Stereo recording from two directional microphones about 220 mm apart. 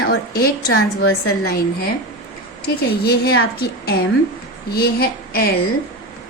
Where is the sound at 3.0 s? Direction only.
45° left (ahead or behind).